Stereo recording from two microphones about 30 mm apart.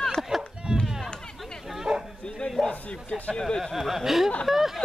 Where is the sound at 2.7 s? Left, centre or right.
Left.